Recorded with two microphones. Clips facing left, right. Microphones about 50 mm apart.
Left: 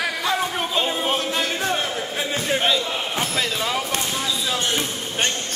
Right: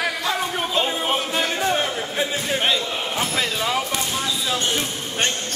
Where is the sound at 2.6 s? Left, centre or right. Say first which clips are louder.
Even; centre.